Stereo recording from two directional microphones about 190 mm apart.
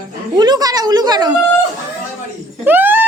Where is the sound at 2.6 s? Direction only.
10° right (ahead or behind).